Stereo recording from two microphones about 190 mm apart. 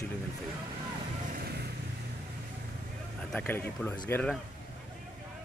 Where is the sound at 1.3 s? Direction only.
55° right (ahead or behind).